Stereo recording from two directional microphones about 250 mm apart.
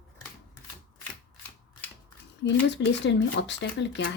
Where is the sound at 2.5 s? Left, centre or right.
Left.